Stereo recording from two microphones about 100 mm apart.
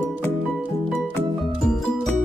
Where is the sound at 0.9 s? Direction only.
5° left (ahead or behind).